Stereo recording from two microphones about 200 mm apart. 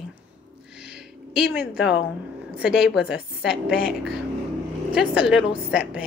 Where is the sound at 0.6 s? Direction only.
5° right (ahead or behind).